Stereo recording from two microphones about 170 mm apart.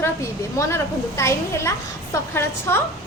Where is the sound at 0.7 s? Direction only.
15° left (ahead or behind).